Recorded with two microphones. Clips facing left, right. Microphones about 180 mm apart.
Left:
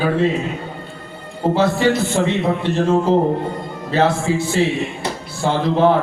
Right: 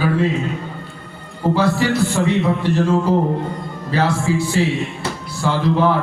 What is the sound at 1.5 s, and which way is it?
A man's voice, 25° left (ahead or behind).